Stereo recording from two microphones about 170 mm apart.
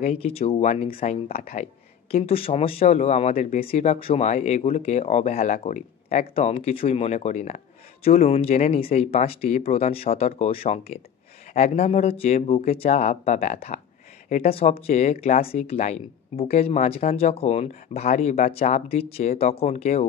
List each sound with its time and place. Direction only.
0.0 s speech: 35° left (ahead or behind)